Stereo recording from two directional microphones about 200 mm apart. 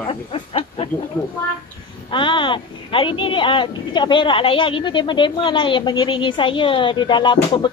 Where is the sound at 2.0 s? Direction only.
25° left (ahead or behind).